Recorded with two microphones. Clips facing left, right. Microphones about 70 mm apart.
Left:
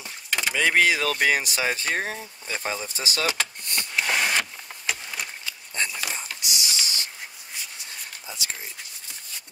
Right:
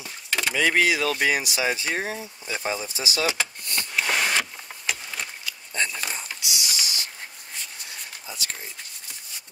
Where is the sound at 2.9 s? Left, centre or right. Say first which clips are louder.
Even; left.